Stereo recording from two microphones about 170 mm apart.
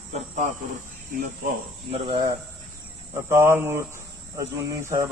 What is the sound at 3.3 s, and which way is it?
Speech, 15° right (ahead or behind).